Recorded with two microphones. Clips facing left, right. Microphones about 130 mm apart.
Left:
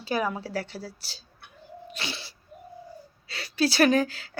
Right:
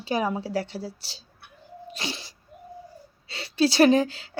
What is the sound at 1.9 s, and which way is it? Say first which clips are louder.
Sneeze: right 3 dB; 30° right (ahead or behind).